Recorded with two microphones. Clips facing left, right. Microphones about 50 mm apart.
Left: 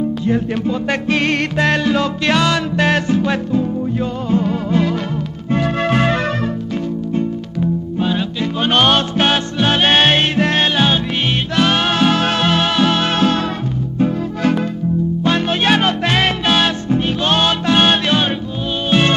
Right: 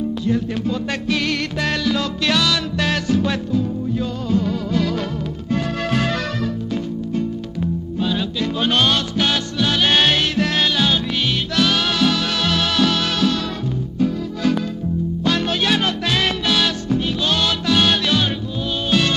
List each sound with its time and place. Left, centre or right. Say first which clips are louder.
0.3 s music: left 2 dB; left
8.0 s music: left 2 dB; left
8.7 s music: left 6 dB; left